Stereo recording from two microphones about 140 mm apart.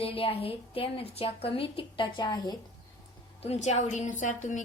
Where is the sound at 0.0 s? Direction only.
40° left (ahead or behind).